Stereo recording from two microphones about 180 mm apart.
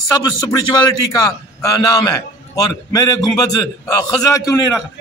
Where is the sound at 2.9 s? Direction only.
20° left (ahead or behind).